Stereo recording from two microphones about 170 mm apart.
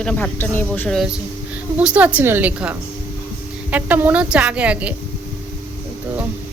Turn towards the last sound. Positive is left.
turn(degrees=-5)  # may be behind; listen again after turning